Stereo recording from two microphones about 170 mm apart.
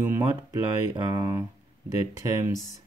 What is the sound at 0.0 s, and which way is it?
Speech, 15° right (ahead or behind).